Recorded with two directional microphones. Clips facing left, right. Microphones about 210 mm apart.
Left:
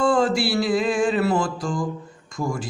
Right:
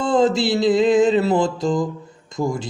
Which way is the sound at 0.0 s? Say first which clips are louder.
Right 2 dB; 20° right (ahead or behind).